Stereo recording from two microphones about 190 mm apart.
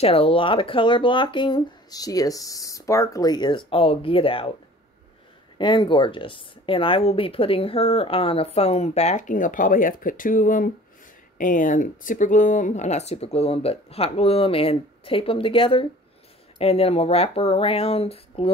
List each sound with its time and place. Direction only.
0.0 s speech: 30° left (ahead or behind)
5.6 s speech: 25° left (ahead or behind)